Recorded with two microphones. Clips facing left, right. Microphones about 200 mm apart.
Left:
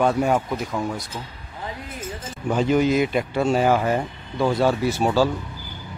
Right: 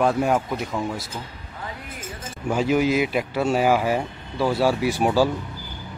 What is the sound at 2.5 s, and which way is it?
Speech, 5° right (ahead or behind).